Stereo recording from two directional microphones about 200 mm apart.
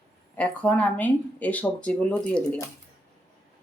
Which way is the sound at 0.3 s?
5° left (ahead or behind).